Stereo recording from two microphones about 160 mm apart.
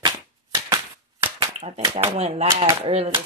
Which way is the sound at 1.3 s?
40° right (ahead or behind).